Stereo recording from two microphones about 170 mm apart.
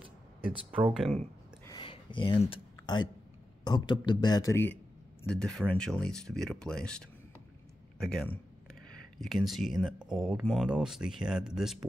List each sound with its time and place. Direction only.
0.9 s speech: centre (ahead or behind)
1.7 s a sound: 30° left (ahead or behind)
3.6 s a man's voice: 25° left (ahead or behind)
5.2 s speech: 5° left (ahead or behind)